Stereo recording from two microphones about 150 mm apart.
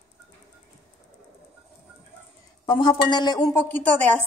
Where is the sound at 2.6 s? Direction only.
30° left (ahead or behind).